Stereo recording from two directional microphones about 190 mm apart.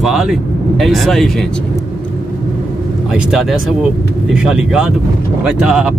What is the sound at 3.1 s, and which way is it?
Speech, centre (ahead or behind).